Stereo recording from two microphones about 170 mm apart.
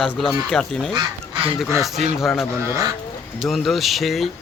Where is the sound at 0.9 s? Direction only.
30° right (ahead or behind).